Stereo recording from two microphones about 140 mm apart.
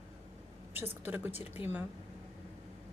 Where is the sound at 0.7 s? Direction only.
15° right (ahead or behind).